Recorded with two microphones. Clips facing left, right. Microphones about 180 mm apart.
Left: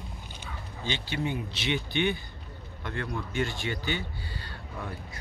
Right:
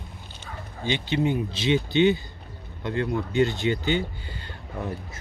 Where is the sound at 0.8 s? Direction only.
20° right (ahead or behind).